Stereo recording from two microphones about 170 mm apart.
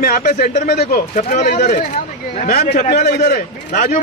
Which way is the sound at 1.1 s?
45° left (ahead or behind).